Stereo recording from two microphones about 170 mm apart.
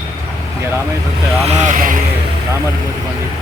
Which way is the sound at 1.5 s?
50° right (ahead or behind).